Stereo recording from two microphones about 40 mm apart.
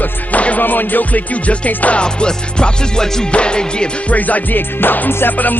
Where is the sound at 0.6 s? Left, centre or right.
Left.